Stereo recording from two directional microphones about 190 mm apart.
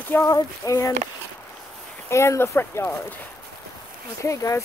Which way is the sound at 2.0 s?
15° left (ahead or behind).